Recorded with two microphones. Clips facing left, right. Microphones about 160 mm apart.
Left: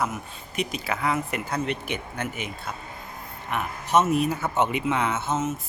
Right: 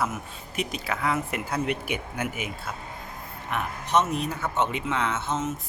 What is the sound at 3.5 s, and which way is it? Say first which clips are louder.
A man's voice: left 2 dB; 5° left (ahead or behind).